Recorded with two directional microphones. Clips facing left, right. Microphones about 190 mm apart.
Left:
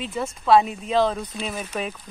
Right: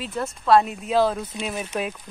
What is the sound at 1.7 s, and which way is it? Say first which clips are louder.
Speech: right 2 dB; 5° right (ahead or behind).